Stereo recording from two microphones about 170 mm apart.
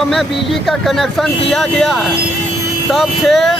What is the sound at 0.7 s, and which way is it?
Speech, centre (ahead or behind).